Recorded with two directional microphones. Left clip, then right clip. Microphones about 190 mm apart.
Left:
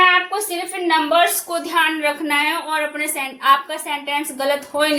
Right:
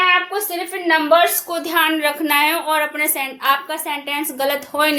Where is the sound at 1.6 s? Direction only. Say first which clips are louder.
Right 1 dB; 50° right (ahead or behind).